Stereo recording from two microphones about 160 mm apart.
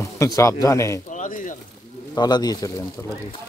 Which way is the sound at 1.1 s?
55° left (ahead or behind).